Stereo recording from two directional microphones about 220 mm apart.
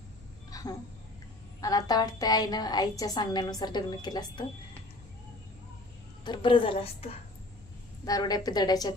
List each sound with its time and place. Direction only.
0.5 s a sound: 15° left (ahead or behind)
1.6 s a woman's voice: 15° left (ahead or behind)
6.2 s a woman's voice: 20° left (ahead or behind)